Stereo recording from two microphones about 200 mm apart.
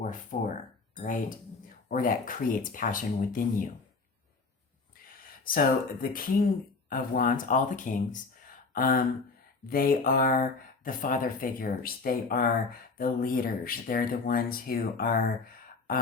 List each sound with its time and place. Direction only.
0.0 s speech: 40° left (ahead or behind)
5.0 s speech: 45° left (ahead or behind)